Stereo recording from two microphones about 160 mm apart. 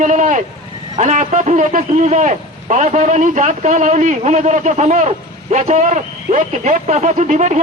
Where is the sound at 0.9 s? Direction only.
50° right (ahead or behind).